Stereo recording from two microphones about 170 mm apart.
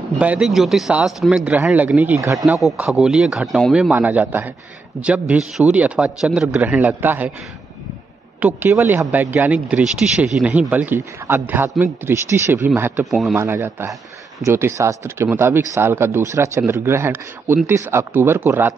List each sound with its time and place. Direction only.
0.2 s speech: 5° right (ahead or behind)
2.3 s speech: centre (ahead or behind)
8.4 s speech: 10° right (ahead or behind)
13.0 s speech: centre (ahead or behind)
13.4 s speech: 15° right (ahead or behind)